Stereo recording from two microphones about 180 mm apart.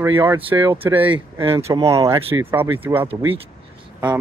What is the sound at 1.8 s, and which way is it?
Speech, 20° right (ahead or behind).